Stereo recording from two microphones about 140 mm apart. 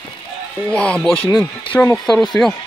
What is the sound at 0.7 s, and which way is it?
A man's voice, 5° left (ahead or behind).